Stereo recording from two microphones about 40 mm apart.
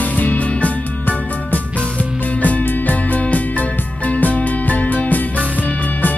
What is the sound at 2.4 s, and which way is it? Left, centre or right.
Music, left.